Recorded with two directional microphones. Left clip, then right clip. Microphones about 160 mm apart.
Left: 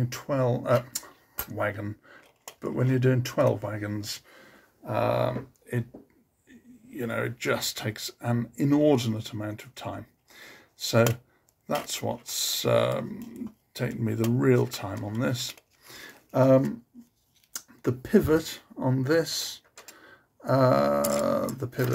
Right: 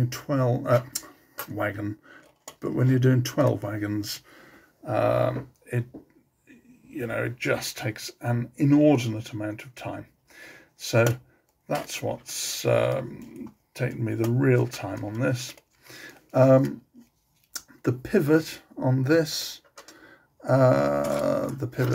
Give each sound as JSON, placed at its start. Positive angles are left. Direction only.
{"t": 0.0, "sound": "speech", "side_deg": 0}
{"t": 4.8, "sound": "grunt", "side_deg": 15}
{"t": 6.9, "sound": "speech", "side_deg": 30}